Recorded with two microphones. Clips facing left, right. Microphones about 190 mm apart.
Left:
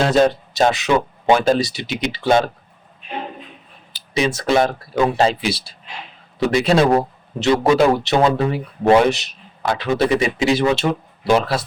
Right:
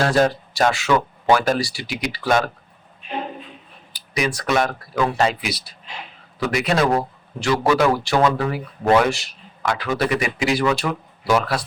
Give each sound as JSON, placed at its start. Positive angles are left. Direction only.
{"t": 0.0, "sound": "a man's voice", "side_deg": 20}
{"t": 3.9, "sound": "a man's voice", "side_deg": 25}